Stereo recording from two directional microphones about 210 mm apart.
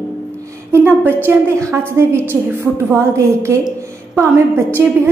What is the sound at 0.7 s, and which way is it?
A woman's voice, 10° right (ahead or behind).